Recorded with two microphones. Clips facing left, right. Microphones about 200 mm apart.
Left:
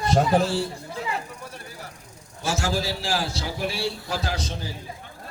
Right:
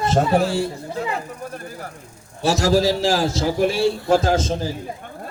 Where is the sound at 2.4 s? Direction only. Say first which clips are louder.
Right 9 dB; 40° right (ahead or behind).